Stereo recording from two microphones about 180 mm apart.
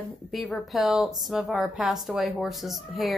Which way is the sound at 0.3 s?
Centre (ahead or behind).